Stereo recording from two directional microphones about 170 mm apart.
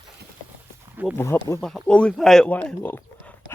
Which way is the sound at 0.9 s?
10° right (ahead or behind).